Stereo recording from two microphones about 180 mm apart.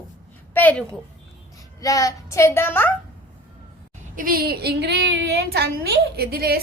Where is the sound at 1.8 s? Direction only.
20° left (ahead or behind).